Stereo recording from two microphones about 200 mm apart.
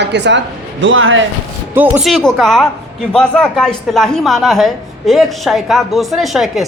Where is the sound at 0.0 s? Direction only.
60° right (ahead or behind); by 1.2 s 75° right (ahead or behind).